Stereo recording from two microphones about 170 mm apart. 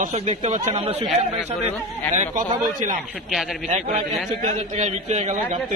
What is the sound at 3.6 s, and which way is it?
Speech, 40° right (ahead or behind).